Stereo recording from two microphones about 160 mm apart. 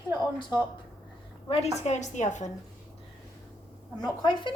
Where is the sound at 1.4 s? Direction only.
45° left (ahead or behind).